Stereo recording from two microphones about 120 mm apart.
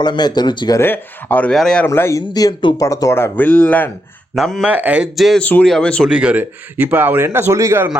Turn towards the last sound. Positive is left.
turn(degrees=-25)  # may be behind; listen again after turning